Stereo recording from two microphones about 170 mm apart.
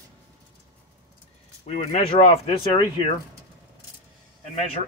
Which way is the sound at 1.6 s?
40° left (ahead or behind).